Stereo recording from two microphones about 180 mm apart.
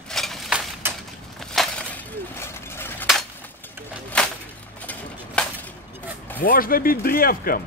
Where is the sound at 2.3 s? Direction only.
10° left (ahead or behind).